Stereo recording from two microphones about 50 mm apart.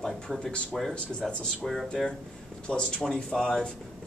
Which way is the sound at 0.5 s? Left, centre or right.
Left.